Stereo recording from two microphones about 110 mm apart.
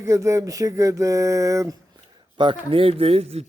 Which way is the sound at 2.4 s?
50° right (ahead or behind).